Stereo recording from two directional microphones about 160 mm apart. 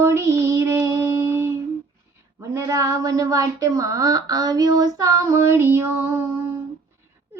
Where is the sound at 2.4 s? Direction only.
20° right (ahead or behind).